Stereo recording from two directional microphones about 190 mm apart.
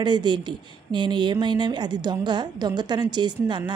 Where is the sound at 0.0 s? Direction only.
25° right (ahead or behind).